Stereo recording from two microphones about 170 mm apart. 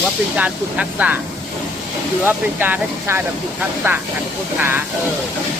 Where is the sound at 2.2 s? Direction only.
10° right (ahead or behind).